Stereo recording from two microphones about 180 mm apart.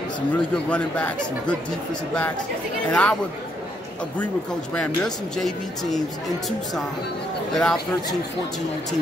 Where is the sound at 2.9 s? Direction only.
5° left (ahead or behind).